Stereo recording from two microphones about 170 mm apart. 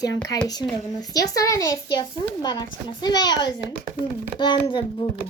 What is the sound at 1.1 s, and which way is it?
Speech, 20° left (ahead or behind).